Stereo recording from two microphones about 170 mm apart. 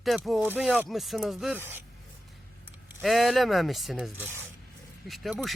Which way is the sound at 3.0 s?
Centre (ahead or behind).